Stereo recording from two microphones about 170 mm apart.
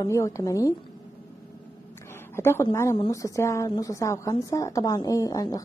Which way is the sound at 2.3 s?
15° left (ahead or behind).